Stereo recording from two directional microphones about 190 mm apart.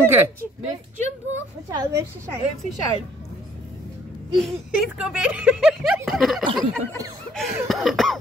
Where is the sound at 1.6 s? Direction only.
20° right (ahead or behind).